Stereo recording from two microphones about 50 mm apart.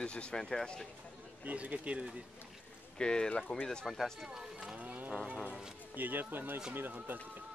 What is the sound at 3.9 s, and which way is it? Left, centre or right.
Speech, centre.